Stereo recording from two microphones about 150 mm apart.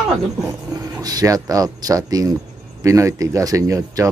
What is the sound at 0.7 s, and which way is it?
Speech, 25° right (ahead or behind).